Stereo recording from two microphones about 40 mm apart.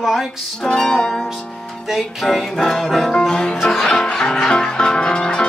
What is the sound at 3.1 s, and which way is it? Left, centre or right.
Music, left.